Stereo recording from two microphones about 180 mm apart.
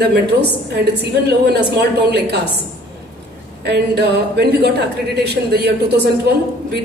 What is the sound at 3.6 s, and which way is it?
A woman's voice, 70° right (ahead or behind).